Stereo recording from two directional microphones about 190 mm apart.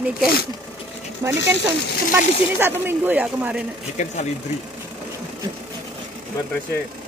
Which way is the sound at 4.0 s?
40° left (ahead or behind).